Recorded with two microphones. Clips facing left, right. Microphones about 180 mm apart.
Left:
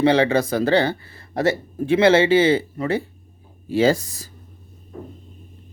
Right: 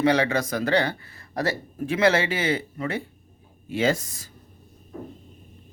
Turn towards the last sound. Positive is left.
turn(degrees=35)  # may be behind; listen again after turning